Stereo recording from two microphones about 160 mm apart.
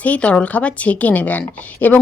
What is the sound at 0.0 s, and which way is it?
A woman's voice, 10° left (ahead or behind).